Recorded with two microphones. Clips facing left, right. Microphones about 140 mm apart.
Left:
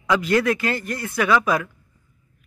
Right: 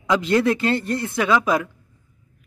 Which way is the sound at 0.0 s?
20° right (ahead or behind).